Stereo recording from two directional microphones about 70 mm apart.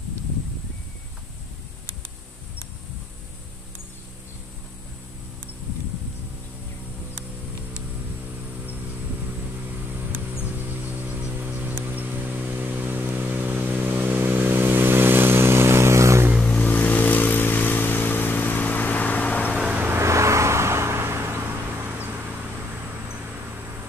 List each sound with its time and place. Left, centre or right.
11.4 s vehicle: right
16.4 s vehicle: centre
19.5 s vehicle: centre
19.8 s vehicle: right